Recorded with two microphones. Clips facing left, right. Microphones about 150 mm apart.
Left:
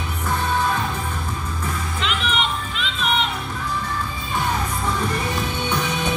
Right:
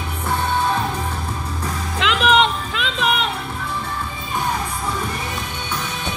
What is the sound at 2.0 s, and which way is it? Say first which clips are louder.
Music: right 9 dB; 90° right.